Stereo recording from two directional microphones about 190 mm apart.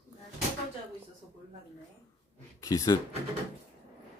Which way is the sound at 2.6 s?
20° left (ahead or behind).